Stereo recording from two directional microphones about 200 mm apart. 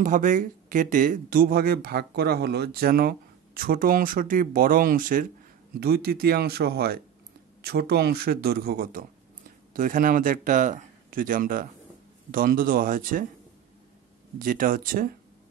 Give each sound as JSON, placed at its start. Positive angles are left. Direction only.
{"t": 0.0, "sound": "speech", "side_deg": -40}
{"t": 14.4, "sound": "speech", "side_deg": -45}